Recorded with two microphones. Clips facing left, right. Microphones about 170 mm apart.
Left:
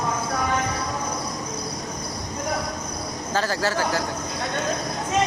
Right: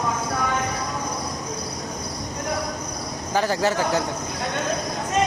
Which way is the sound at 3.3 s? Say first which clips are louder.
Right 3 dB; 15° right (ahead or behind).